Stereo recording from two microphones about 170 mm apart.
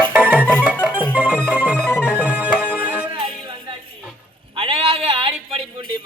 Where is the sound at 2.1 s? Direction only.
10° right (ahead or behind).